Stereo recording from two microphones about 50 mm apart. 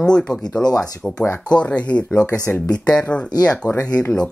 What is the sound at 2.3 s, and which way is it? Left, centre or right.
Speech, left.